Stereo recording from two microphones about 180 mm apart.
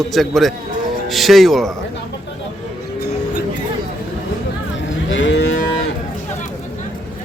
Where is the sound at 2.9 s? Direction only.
65° left (ahead or behind).